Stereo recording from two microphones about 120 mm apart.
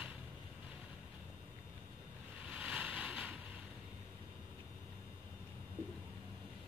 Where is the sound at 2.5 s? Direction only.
10° right (ahead or behind).